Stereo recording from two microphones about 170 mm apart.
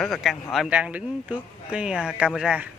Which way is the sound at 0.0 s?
Centre (ahead or behind).